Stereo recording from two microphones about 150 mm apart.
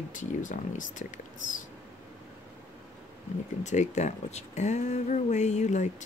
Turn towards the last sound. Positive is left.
turn(degrees=50)  # may be behind; listen again after turning